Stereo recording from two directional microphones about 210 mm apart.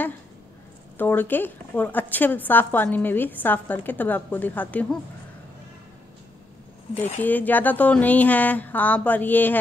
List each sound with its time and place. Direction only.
0.9 s a woman's voice: 10° left (ahead or behind)
6.9 s a woman's voice: 10° left (ahead or behind)